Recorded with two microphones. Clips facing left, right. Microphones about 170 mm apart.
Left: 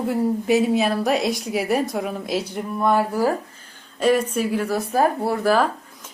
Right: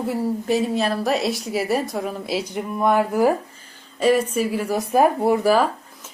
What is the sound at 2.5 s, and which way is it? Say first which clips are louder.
Speech: right 1 dB; 10° right (ahead or behind).